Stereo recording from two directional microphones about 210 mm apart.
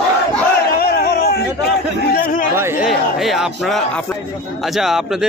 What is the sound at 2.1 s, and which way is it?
Chatter, 40° left (ahead or behind).